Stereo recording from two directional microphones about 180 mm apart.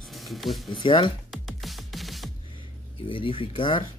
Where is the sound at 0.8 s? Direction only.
30° left (ahead or behind).